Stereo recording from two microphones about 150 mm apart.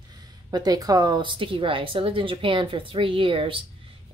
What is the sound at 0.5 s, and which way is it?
Speech, 25° right (ahead or behind).